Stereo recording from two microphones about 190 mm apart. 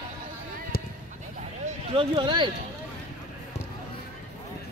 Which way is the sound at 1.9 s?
30° right (ahead or behind).